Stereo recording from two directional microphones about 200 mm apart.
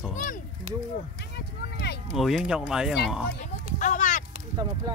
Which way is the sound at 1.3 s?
55° left (ahead or behind).